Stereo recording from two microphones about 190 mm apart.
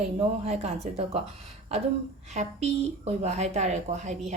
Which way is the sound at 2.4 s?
35° right (ahead or behind).